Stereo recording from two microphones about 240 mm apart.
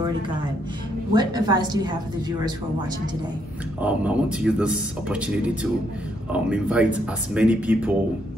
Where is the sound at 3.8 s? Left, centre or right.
Centre.